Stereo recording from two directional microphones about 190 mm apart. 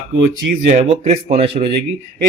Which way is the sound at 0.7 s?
35° right (ahead or behind).